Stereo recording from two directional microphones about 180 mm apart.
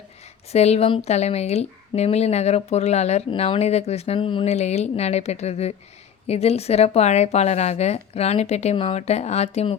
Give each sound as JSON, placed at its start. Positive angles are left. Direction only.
{"t": 0.5, "sound": "speech", "side_deg": 35}